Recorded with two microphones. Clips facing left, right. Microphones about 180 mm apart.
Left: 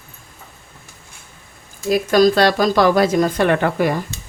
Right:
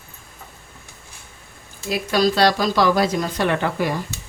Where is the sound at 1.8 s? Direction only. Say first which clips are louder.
Left 6 dB; 45° left (ahead or behind).